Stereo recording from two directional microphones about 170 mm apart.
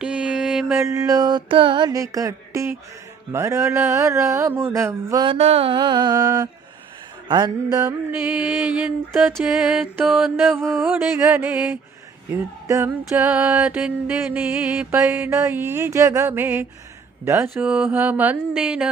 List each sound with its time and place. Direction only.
0.0 s mantra: 5° right (ahead or behind)
0.8 s mantra: 20° right (ahead or behind)
3.3 s music: 15° right (ahead or behind)
5.2 s mantra: 35° right (ahead or behind)
8.3 s mantra: 5° right (ahead or behind)
10.4 s music: centre (ahead or behind)